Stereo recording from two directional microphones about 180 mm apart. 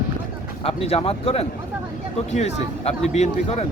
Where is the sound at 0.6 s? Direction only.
35° left (ahead or behind).